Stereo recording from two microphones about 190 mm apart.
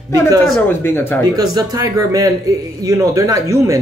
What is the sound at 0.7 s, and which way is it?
Speech, 10° left (ahead or behind).